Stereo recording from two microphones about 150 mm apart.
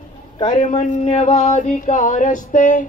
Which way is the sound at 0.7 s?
40° left (ahead or behind).